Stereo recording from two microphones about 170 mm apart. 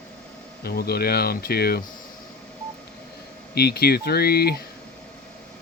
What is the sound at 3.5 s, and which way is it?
Speech, 70° left (ahead or behind).